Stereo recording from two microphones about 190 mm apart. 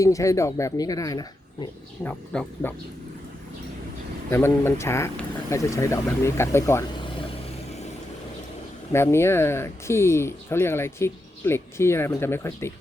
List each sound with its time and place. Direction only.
0.0 s speech: 15° left (ahead or behind)
2.0 s speech: 5° left (ahead or behind)
4.3 s speech: 15° left (ahead or behind)
8.9 s speech: 15° left (ahead or behind)